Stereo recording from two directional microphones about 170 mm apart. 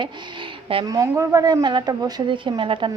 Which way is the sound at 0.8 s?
20° right (ahead or behind).